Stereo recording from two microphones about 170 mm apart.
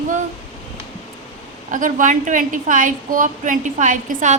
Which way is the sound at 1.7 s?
50° right (ahead or behind).